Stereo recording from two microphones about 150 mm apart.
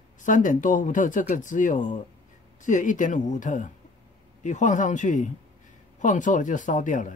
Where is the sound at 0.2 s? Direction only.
60° left (ahead or behind).